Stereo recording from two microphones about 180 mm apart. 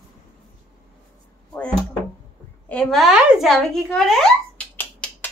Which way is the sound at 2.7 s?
5° left (ahead or behind).